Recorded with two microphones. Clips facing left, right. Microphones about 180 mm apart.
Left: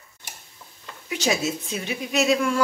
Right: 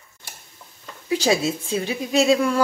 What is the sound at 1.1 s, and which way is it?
Speech, 30° right (ahead or behind).